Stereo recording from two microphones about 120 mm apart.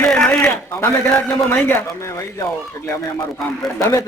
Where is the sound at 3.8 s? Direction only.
25° left (ahead or behind).